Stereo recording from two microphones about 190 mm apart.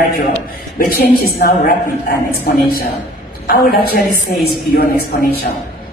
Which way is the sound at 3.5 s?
50° left (ahead or behind).